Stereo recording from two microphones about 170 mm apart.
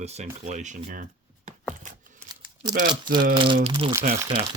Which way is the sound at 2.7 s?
55° right (ahead or behind).